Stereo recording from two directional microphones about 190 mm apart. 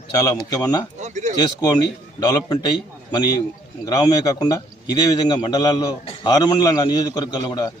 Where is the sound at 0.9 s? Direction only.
40° right (ahead or behind).